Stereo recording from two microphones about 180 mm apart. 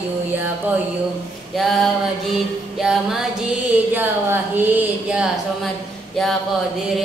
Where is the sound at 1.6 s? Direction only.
Centre (ahead or behind).